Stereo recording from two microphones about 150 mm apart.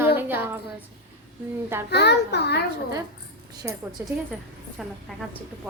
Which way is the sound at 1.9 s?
90° left.